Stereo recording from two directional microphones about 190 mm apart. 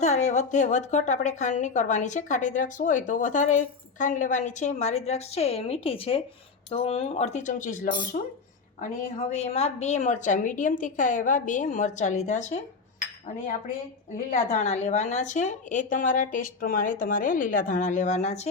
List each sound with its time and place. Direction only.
0.0 s a woman's voice: 35° left (ahead or behind)
14.5 s speech: 35° left (ahead or behind)